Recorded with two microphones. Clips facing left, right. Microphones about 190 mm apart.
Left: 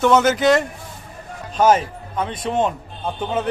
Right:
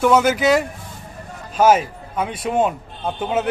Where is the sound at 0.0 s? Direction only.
5° right (ahead or behind).